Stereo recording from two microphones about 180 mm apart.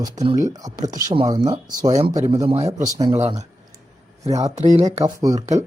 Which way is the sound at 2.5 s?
35° right (ahead or behind).